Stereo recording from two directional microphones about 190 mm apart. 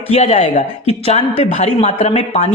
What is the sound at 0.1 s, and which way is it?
A man's voice, 35° left (ahead or behind).